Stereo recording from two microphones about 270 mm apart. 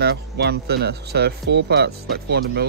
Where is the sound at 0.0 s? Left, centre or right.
Right.